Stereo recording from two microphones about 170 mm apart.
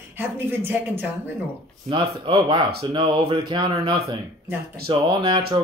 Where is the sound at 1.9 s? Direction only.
30° right (ahead or behind).